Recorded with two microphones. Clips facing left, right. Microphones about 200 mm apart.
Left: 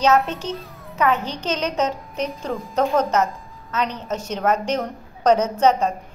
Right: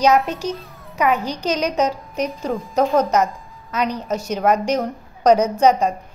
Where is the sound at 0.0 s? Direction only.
10° right (ahead or behind).